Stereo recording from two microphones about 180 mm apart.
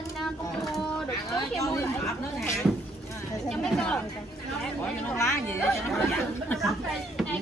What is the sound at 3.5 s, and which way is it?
Speech, 5° left (ahead or behind).